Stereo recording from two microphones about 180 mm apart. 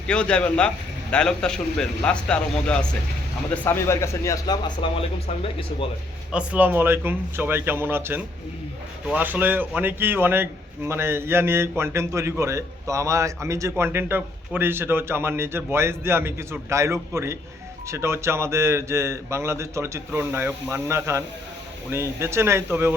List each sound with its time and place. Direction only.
0.1 s a man's voice: 5° left (ahead or behind); by 5.0 s 25° left (ahead or behind)
6.3 s a man's voice: 10° right (ahead or behind)